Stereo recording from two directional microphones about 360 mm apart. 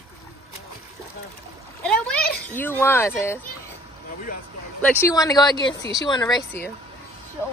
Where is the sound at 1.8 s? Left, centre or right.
Centre.